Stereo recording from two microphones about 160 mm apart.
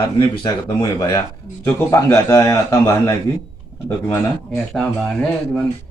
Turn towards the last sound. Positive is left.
turn(degrees=5)  # may be behind; listen again after turning